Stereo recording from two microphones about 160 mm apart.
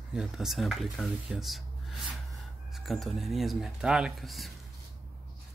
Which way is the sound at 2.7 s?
Centre (ahead or behind).